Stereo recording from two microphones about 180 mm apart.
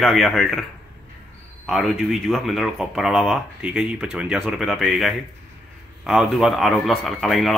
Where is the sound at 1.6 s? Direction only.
Centre (ahead or behind).